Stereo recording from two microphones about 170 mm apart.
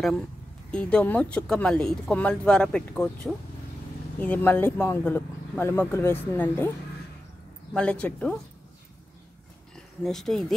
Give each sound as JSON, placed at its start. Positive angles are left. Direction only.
{"t": 0.0, "sound": "speech", "side_deg": 5}
{"t": 4.2, "sound": "speech", "side_deg": 10}
{"t": 7.7, "sound": "speech", "side_deg": 5}
{"t": 10.0, "sound": "speech", "side_deg": 0}